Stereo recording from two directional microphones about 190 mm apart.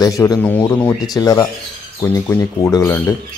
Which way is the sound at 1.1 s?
20° left (ahead or behind).